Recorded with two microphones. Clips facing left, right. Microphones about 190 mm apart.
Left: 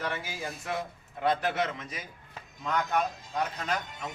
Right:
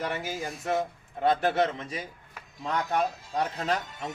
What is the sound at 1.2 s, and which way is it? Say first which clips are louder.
A man's voice: right 4 dB; 30° right (ahead or behind).